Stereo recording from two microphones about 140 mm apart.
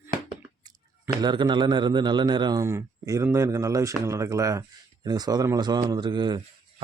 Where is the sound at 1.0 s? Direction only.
30° right (ahead or behind).